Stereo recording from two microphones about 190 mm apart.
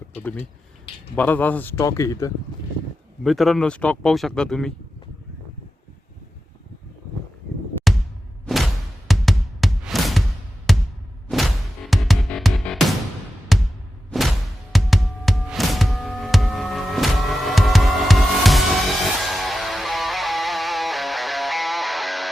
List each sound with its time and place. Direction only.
0.1 s speech: 10° left (ahead or behind)
3.2 s speech: centre (ahead or behind)
9.0 s music: centre (ahead or behind)